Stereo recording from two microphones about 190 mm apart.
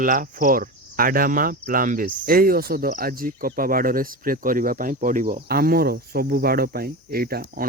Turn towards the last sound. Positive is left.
turn(degrees=-50)  # may be behind; listen again after turning